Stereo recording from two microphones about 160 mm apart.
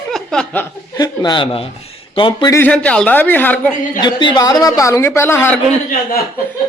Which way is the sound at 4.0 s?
30° left (ahead or behind).